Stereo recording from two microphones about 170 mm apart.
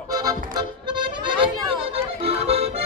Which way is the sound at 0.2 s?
25° right (ahead or behind).